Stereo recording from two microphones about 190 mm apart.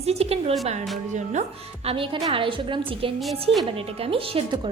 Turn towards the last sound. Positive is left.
turn(degrees=-30)  # may be behind; listen again after turning